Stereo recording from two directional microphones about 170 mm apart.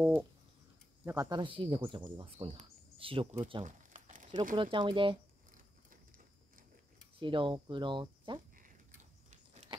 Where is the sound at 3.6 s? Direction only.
45° right (ahead or behind).